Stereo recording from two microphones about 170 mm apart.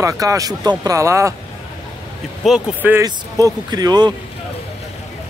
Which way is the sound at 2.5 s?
5° right (ahead or behind).